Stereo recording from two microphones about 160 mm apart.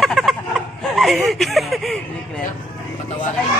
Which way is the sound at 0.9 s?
Centre (ahead or behind).